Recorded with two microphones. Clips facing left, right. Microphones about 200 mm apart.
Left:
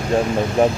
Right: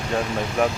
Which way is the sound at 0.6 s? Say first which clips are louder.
Left 5 dB; 30° left (ahead or behind).